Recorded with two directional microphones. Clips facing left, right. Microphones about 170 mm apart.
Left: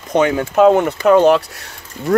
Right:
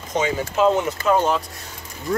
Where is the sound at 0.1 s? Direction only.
60° left (ahead or behind).